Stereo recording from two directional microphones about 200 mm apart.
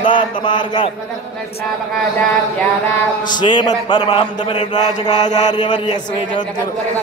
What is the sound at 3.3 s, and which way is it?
A man's voice, 20° left (ahead or behind).